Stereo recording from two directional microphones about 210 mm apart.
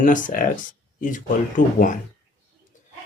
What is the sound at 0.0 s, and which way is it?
Speech, 40° left (ahead or behind).